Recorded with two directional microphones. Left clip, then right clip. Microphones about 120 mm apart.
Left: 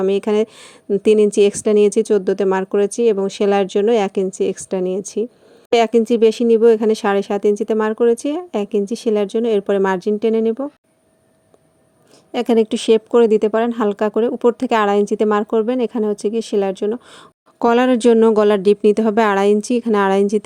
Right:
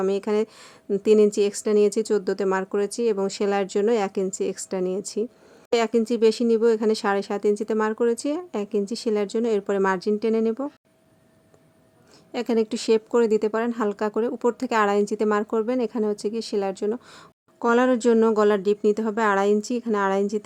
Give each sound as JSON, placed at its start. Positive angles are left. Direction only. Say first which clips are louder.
{"t": 0.1, "sound": "speech", "louder": "left 7 dB", "side_deg": 45}
{"t": 12.3, "sound": "speech", "louder": "left 8 dB", "side_deg": 45}
{"t": 17.6, "sound": "speech", "louder": "left 6 dB", "side_deg": 60}